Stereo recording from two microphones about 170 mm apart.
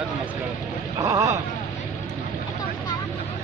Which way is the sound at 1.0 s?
20° right (ahead or behind).